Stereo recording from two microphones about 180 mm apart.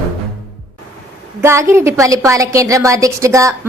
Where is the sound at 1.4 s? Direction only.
15° right (ahead or behind).